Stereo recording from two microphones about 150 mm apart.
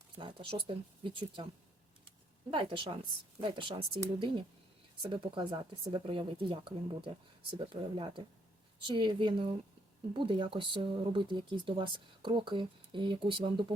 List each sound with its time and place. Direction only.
0.2 s speech: 35° right (ahead or behind)